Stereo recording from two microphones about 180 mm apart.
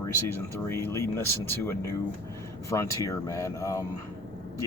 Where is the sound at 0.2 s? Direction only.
15° left (ahead or behind).